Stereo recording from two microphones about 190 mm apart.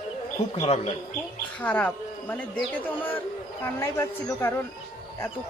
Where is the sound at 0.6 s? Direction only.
30° left (ahead or behind).